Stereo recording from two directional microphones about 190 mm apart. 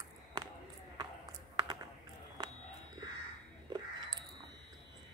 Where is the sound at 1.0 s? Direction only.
20° right (ahead or behind).